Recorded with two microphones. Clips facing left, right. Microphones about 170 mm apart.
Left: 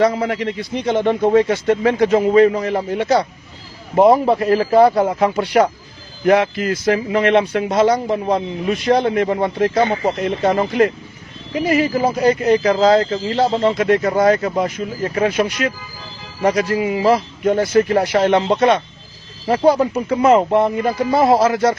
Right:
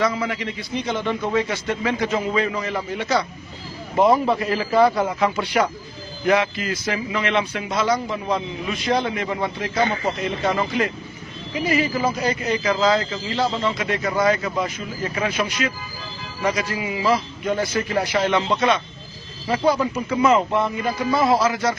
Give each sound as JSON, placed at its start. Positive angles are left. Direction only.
{"t": 0.0, "sound": "a man's voice", "side_deg": 45}
{"t": 4.4, "sound": "a man's voice", "side_deg": 45}
{"t": 5.3, "sound": "a man's voice", "side_deg": 55}